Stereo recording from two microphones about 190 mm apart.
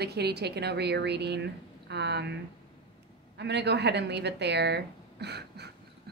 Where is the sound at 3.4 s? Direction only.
65° right (ahead or behind).